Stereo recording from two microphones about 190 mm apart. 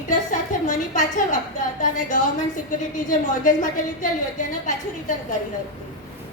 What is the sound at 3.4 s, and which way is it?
Speech, 45° left (ahead or behind).